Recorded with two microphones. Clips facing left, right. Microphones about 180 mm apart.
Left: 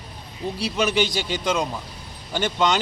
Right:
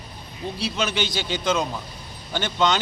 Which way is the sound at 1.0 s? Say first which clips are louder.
Left 3 dB; 35° left (ahead or behind).